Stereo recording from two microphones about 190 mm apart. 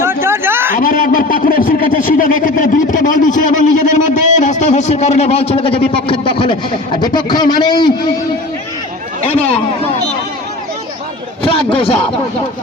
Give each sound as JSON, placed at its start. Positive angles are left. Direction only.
{"t": 0.0, "sound": "a sound", "side_deg": -15}
{"t": 0.7, "sound": "a man's voice", "side_deg": 45}
{"t": 9.2, "sound": "speech", "side_deg": 30}
{"t": 11.4, "sound": "a man's voice", "side_deg": 30}